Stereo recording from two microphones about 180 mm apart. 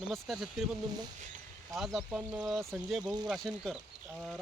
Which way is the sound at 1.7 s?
Centre (ahead or behind).